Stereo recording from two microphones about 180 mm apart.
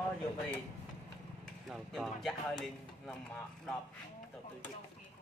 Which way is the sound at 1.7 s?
Centre (ahead or behind).